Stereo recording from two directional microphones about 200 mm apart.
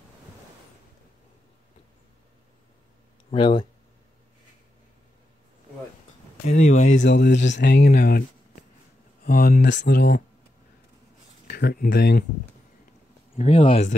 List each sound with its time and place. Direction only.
3.3 s speech: 25° left (ahead or behind)
6.4 s speech: 35° left (ahead or behind)
7.0 s speech: 60° left (ahead or behind)
9.2 s speech: 45° left (ahead or behind)
11.4 s speech: 50° left (ahead or behind)
13.4 s speech: 30° left (ahead or behind)